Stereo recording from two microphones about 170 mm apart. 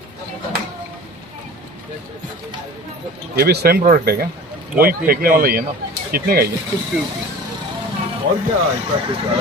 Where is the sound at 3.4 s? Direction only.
70° right (ahead or behind).